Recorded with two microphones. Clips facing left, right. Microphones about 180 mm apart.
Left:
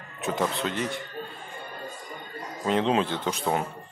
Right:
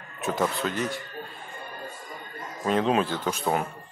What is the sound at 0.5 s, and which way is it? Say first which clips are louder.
Speech: right 1 dB; 20° left (ahead or behind).